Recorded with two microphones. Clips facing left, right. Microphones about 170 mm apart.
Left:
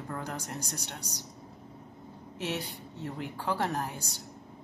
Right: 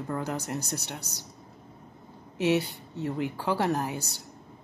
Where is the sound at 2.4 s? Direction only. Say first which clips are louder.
Right 10 dB; 70° right (ahead or behind).